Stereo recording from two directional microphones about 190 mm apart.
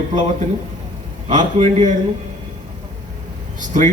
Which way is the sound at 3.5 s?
40° right (ahead or behind).